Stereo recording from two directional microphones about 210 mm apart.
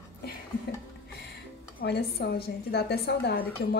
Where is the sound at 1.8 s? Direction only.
45° left (ahead or behind).